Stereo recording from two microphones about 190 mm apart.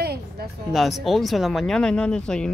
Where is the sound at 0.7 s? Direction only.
Centre (ahead or behind).